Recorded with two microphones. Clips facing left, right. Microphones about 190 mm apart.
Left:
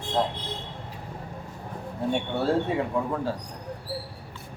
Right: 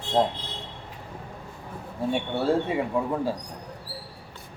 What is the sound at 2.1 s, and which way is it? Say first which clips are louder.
Speech: right 1 dB; centre (ahead or behind).